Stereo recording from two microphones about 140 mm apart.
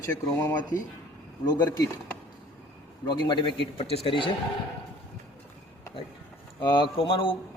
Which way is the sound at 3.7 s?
45° left (ahead or behind).